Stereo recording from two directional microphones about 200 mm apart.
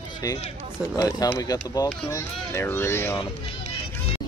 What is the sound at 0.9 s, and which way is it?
Speech, 20° left (ahead or behind).